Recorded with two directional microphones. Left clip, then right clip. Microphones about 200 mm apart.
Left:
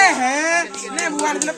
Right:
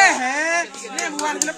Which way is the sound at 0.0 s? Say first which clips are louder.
Left 1 dB; 15° left (ahead or behind).